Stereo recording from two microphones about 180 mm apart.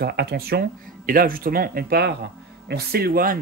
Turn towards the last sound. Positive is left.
turn(degrees=-55)  # may be behind; listen again after turning